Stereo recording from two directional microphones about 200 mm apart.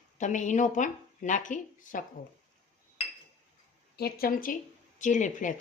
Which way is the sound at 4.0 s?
50° left (ahead or behind).